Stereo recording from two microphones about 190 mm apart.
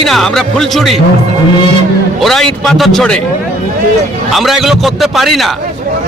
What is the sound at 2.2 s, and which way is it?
A man's voice, centre (ahead or behind).